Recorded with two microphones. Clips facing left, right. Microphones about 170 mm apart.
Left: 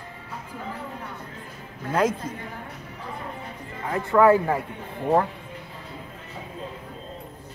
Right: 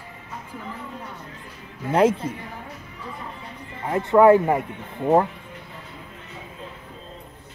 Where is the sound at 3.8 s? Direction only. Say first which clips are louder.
Right 3 dB; 25° right (ahead or behind).